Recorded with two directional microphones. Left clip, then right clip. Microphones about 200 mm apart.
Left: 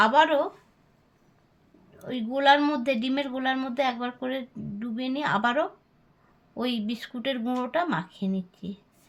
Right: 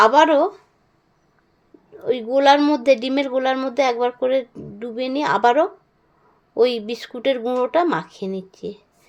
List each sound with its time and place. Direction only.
0.0 s a woman's voice: 45° right (ahead or behind)
2.0 s a woman's voice: 45° right (ahead or behind)